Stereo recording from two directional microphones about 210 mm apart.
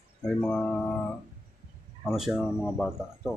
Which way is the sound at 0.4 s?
5° left (ahead or behind).